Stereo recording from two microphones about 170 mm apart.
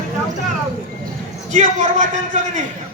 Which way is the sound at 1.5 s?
45° right (ahead or behind).